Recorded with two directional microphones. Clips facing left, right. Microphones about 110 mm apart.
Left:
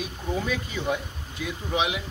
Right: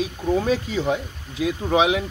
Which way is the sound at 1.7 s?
40° right (ahead or behind).